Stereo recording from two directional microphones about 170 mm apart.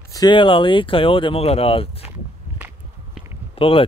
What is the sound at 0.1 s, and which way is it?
Speech, 25° left (ahead or behind).